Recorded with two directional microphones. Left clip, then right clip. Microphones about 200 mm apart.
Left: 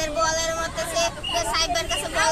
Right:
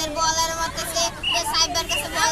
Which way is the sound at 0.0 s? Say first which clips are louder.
Right 1 dB; 5° right (ahead or behind).